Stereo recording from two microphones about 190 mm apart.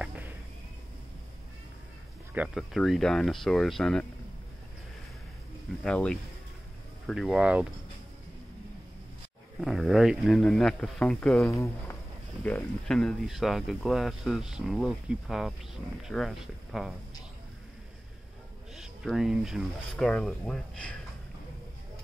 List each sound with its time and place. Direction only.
0.0 s a sound: 10° right (ahead or behind)
2.3 s speech: 5° right (ahead or behind)
5.9 s speech: 5° left (ahead or behind)
9.6 s speech: centre (ahead or behind)
11.4 s speech: 15° left (ahead or behind); by 16.9 s centre (ahead or behind)
18.8 s speech: centre (ahead or behind)